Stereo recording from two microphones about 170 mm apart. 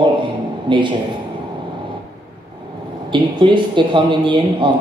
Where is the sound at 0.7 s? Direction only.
30° right (ahead or behind).